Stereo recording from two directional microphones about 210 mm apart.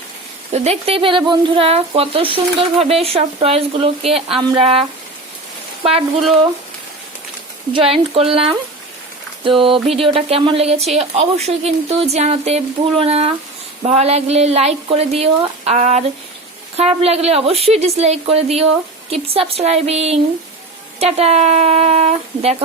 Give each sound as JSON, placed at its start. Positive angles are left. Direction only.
{"t": 0.5, "sound": "speech", "side_deg": -30}
{"t": 7.7, "sound": "speech", "side_deg": -25}